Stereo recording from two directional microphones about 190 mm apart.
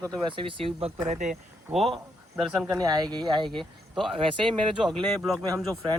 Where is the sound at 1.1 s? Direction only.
40° right (ahead or behind).